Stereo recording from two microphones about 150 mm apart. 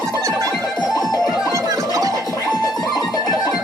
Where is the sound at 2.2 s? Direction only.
25° left (ahead or behind).